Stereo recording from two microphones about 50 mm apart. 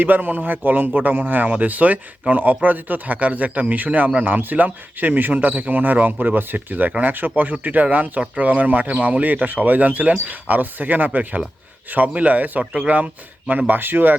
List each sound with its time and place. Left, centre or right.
0.0 s speech: right